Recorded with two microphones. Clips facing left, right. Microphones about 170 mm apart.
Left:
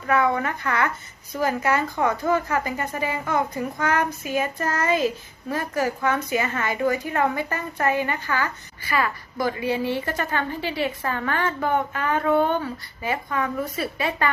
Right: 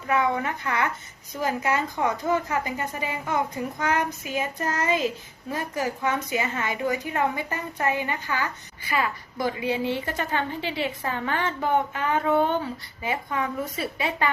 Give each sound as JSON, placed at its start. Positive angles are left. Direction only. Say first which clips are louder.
{"t": 0.1, "sound": "a woman's voice", "louder": "left 3 dB", "side_deg": -15}